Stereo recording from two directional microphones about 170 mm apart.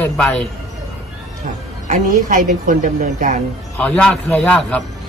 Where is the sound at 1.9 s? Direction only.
50° right (ahead or behind).